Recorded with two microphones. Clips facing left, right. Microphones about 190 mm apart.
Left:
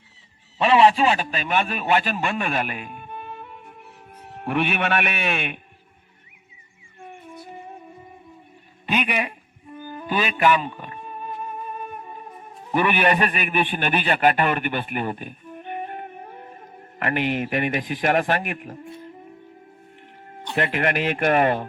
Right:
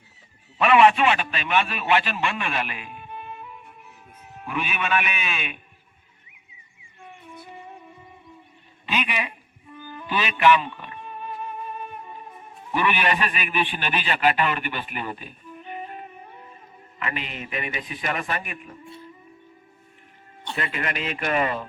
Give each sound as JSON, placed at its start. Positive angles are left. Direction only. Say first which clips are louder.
{"t": 0.6, "sound": "a man's voice", "louder": "left 1 dB", "side_deg": 30}
{"t": 7.0, "sound": "music", "louder": "left 3 dB", "side_deg": 45}
{"t": 8.9, "sound": "speech", "louder": "left 4 dB", "side_deg": 50}
{"t": 9.7, "sound": "music", "louder": "left 3 dB", "side_deg": 45}
{"t": 12.7, "sound": "a man's voice", "louder": "left 3 dB", "side_deg": 50}
{"t": 18.9, "sound": "music", "louder": "left 4 dB", "side_deg": 60}
{"t": 20.6, "sound": "speech", "louder": "left 7 dB", "side_deg": 65}